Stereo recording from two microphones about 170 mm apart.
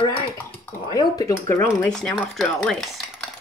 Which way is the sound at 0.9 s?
20° left (ahead or behind).